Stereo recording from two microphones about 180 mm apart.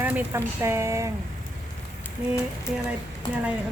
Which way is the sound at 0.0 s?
10° right (ahead or behind).